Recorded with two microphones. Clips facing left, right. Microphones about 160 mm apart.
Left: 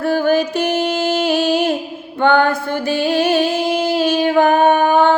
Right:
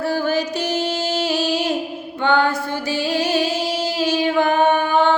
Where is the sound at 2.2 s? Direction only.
55° left (ahead or behind).